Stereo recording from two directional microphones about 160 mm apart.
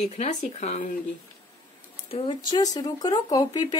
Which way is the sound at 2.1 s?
35° left (ahead or behind).